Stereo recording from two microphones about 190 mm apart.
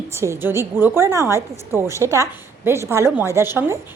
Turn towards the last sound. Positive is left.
turn(degrees=-10)  # may be behind; listen again after turning